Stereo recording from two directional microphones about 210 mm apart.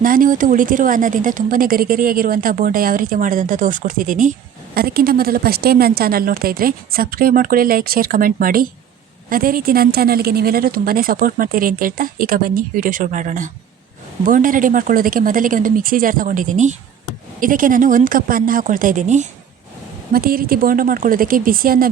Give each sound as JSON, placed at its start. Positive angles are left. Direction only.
{"t": 0.0, "sound": "a woman's voice", "side_deg": -40}